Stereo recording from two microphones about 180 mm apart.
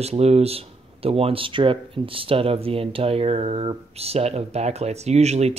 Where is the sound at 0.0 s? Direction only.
35° right (ahead or behind).